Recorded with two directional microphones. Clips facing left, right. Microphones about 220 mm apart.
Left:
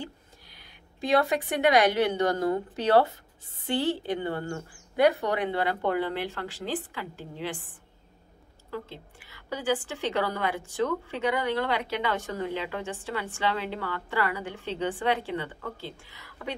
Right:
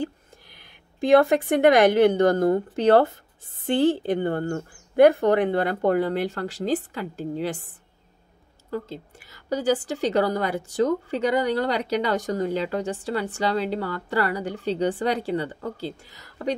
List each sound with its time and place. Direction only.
1.0 s a woman's voice: 50° right (ahead or behind)
8.6 s a woman's voice: 40° right (ahead or behind)